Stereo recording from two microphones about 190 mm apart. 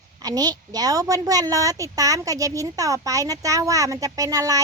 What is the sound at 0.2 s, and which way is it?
A woman's voice, 20° right (ahead or behind).